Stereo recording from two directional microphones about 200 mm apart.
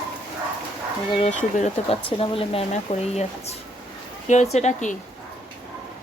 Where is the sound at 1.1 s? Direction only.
30° left (ahead or behind).